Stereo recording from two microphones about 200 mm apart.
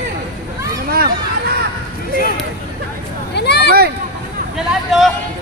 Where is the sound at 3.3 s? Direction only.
55° left (ahead or behind).